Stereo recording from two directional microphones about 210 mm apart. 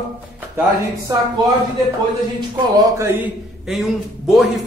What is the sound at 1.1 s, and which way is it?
Speech, 20° right (ahead or behind).